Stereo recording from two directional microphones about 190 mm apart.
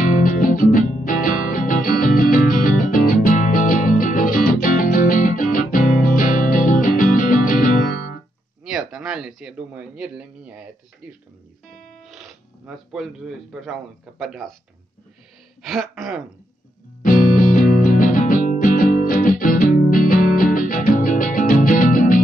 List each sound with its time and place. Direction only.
0.0 s music: 45° left (ahead or behind)
8.6 s a man's voice: 5° right (ahead or behind)
12.0 s speech: centre (ahead or behind)
15.6 s speech: centre (ahead or behind)
17.0 s music: 45° left (ahead or behind)